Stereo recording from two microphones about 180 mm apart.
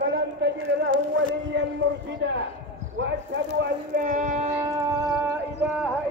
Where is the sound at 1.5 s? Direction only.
80° right.